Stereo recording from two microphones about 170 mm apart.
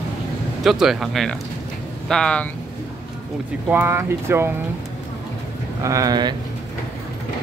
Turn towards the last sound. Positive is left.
turn(degrees=-25)  # may be behind; listen again after turning